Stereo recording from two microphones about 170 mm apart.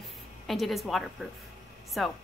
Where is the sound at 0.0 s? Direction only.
Centre (ahead or behind).